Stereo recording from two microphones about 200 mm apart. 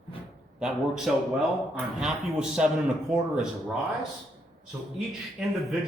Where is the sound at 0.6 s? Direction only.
Centre (ahead or behind).